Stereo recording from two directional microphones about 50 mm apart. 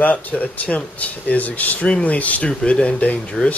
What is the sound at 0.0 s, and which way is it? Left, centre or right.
Speech, left.